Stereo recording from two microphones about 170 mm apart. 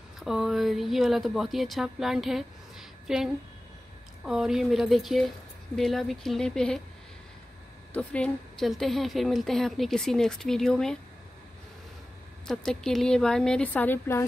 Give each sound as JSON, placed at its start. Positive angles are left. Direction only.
{"t": 0.2, "sound": "a woman's voice", "side_deg": 0}
{"t": 7.9, "sound": "a woman's voice", "side_deg": 5}
{"t": 12.4, "sound": "a woman's voice", "side_deg": 5}